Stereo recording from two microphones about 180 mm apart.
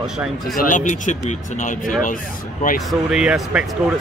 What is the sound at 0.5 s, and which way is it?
Speech, 45° left (ahead or behind).